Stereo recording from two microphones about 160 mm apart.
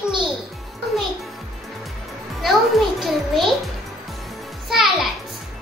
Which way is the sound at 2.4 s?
Centre (ahead or behind).